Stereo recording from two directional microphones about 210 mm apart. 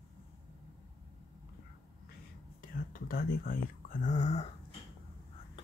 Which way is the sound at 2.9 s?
45° left (ahead or behind).